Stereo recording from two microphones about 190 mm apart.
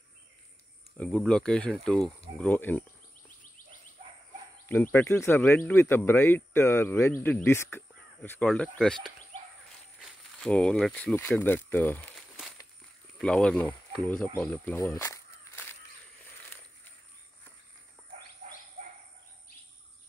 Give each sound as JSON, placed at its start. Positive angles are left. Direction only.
{"t": 0.9, "sound": "speech", "side_deg": 5}
{"t": 4.9, "sound": "speech", "side_deg": 10}
{"t": 14.4, "sound": "a sound", "side_deg": 5}
{"t": 18.4, "sound": "bird", "side_deg": -40}